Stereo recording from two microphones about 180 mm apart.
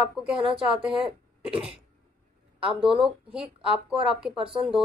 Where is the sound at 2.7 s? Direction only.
5° right (ahead or behind).